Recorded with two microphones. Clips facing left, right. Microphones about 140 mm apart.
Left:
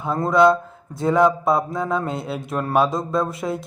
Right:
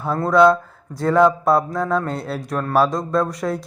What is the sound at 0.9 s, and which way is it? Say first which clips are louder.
Speech: right 2 dB; centre (ahead or behind).